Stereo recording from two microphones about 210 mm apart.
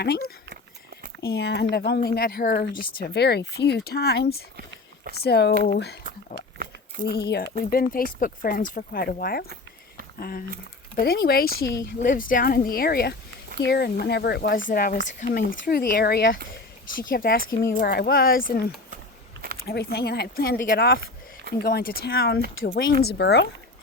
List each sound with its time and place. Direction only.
1.2 s speech: 50° left (ahead or behind)
19.6 s speech: 50° left (ahead or behind)